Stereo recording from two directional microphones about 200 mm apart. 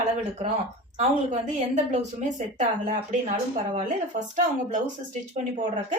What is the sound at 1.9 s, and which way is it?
Speech, 35° right (ahead or behind).